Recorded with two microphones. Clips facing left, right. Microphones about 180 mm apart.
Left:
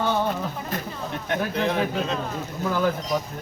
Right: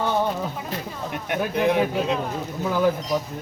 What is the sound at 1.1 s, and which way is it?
A man's voice, 15° right (ahead or behind).